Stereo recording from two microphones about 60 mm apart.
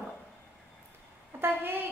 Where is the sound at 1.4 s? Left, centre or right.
Right.